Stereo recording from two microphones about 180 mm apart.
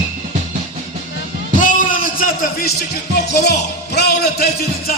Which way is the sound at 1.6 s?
50° left (ahead or behind).